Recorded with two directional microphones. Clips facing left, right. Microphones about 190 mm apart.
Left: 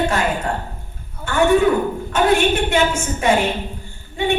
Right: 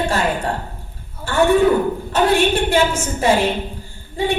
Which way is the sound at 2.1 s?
35° right (ahead or behind).